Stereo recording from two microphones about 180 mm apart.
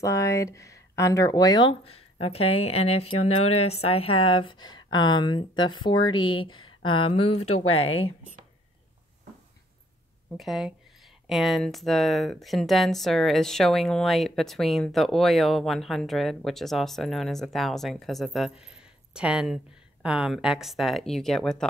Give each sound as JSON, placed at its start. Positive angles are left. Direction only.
{"t": 0.0, "sound": "speech", "side_deg": 15}
{"t": 10.3, "sound": "speech", "side_deg": 0}